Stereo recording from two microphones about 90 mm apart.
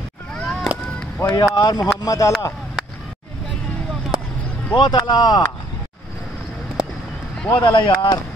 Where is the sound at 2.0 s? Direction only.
35° left (ahead or behind).